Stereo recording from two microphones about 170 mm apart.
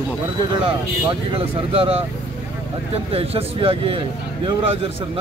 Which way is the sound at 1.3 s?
35° right (ahead or behind).